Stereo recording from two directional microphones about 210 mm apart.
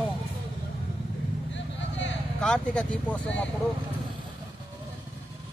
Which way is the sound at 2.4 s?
5° left (ahead or behind).